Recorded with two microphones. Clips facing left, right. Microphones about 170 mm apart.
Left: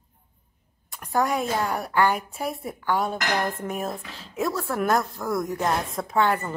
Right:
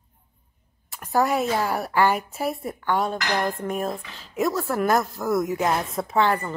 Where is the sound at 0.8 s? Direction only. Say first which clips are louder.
Right 2 dB; centre (ahead or behind).